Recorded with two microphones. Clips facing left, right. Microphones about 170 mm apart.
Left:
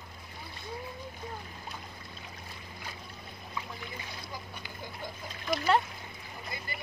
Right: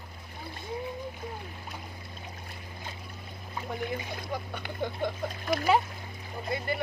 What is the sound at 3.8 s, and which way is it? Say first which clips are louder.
Boat: right 9 dB; 65° right (ahead or behind).